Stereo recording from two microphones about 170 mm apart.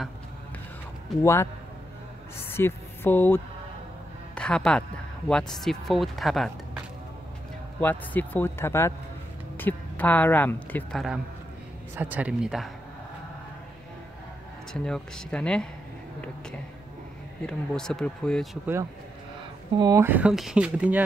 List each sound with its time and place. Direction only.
1.2 s speech: 15° left (ahead or behind)
2.5 s speech: 15° left (ahead or behind)
7.8 s speech: 10° left (ahead or behind)
11.9 s speech: 10° right (ahead or behind)
14.7 s speech: 5° left (ahead or behind)
17.5 s speech: 5° left (ahead or behind)
19.8 s speech: 20° right (ahead or behind)